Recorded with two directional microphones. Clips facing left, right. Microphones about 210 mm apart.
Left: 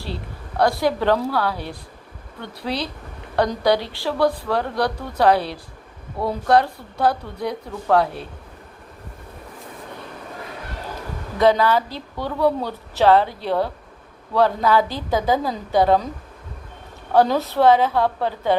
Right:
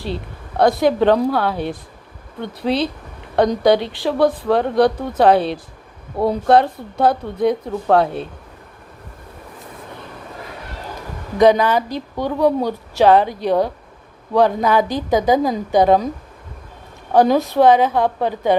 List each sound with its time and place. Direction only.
0.0 s speech: 20° right (ahead or behind)
11.3 s speech: 15° right (ahead or behind)
17.1 s speech: 15° right (ahead or behind)